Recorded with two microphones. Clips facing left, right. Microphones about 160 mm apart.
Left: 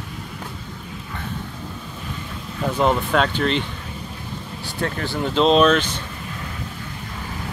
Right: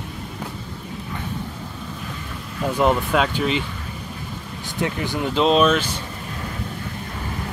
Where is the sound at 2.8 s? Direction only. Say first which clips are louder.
Even; 5° right (ahead or behind).